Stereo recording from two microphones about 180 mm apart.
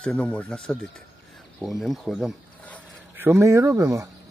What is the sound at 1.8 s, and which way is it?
Speech, centre (ahead or behind).